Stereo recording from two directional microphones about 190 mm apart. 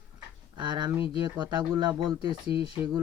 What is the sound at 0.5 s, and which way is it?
Speech, 25° right (ahead or behind).